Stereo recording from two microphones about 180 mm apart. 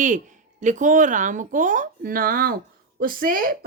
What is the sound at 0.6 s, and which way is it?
Speech, 45° right (ahead or behind).